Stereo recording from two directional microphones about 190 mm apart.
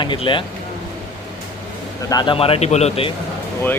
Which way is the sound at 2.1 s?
25° left (ahead or behind).